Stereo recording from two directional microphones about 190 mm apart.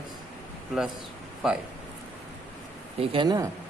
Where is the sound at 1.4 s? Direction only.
5° right (ahead or behind).